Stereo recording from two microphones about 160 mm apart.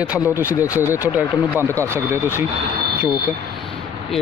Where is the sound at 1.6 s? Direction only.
15° right (ahead or behind).